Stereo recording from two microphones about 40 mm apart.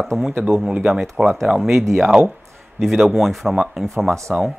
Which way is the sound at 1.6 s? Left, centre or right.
Centre.